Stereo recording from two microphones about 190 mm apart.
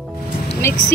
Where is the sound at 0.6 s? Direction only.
15° left (ahead or behind).